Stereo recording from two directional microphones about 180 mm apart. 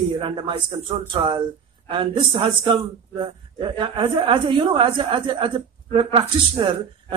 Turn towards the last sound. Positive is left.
turn(degrees=-30)  # may be behind; listen again after turning